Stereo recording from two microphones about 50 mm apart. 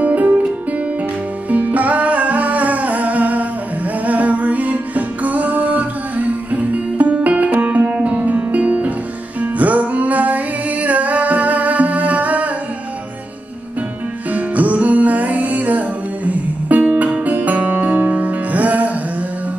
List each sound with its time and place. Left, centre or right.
0.0 s music: right
14.3 s music: right